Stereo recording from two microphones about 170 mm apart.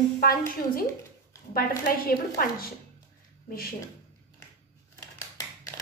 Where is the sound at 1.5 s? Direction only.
60° left (ahead or behind).